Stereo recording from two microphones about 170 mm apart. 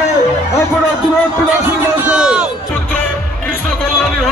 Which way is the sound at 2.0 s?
5° right (ahead or behind).